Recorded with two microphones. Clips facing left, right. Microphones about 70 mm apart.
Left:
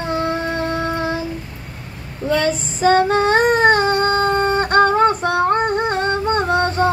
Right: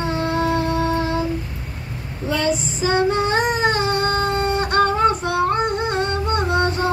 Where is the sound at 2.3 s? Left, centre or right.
Left.